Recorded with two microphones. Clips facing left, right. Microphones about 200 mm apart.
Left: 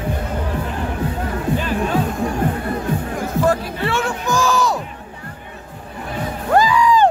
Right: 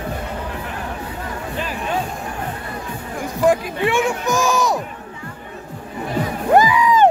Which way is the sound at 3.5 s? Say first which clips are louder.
Right 6 dB; 15° right (ahead or behind).